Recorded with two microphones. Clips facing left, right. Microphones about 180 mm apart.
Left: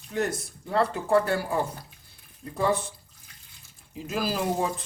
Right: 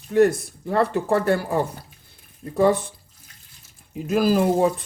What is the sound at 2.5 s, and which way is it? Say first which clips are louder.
Speech: right 7 dB; 60° right (ahead or behind).